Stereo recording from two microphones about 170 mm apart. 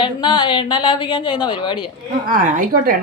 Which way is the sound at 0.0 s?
30° left (ahead or behind).